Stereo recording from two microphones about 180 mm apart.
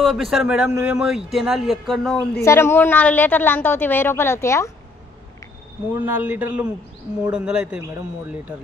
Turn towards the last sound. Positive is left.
turn(degrees=-5)  # may be behind; listen again after turning